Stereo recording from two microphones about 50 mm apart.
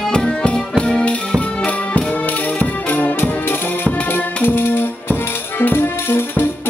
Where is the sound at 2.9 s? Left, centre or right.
Left.